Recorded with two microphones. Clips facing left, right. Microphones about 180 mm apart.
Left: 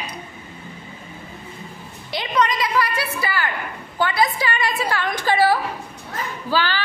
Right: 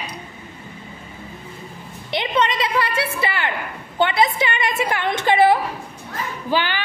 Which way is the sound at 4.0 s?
25° right (ahead or behind).